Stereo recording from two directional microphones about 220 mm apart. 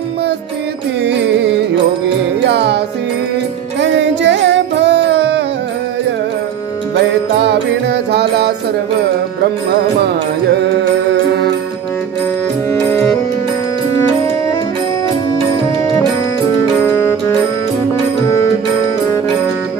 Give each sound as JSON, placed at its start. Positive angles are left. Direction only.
{"t": 2.4, "sound": "music", "side_deg": -50}
{"t": 3.8, "sound": "music", "side_deg": -55}
{"t": 7.4, "sound": "music", "side_deg": -50}
{"t": 12.8, "sound": "music", "side_deg": 10}
{"t": 16.8, "sound": "music", "side_deg": 10}